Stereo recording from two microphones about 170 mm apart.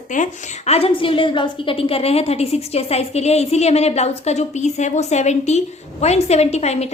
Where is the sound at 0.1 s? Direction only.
45° left (ahead or behind).